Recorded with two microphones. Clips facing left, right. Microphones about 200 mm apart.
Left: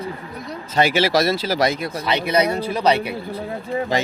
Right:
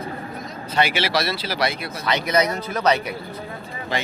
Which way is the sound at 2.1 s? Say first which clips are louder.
Left 1 dB; 30° left (ahead or behind).